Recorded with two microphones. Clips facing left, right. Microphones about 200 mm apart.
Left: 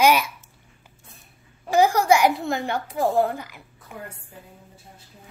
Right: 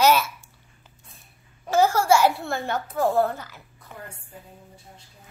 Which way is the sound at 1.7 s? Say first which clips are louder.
Left 1 dB; 15° left (ahead or behind).